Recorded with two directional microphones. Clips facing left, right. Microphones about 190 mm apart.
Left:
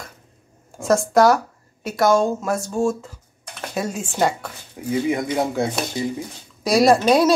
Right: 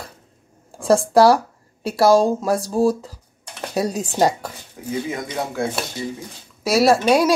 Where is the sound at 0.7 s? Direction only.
30° right (ahead or behind).